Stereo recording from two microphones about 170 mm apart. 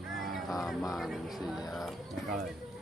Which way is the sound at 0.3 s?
Centre (ahead or behind).